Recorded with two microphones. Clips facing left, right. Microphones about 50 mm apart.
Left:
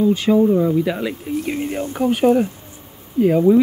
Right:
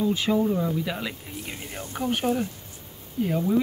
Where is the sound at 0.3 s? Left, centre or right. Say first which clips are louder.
Left 11 dB; centre.